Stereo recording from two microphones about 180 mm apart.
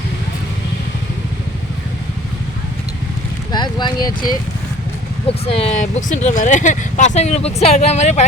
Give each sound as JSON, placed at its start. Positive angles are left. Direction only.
{"t": 3.5, "sound": "speech", "side_deg": 25}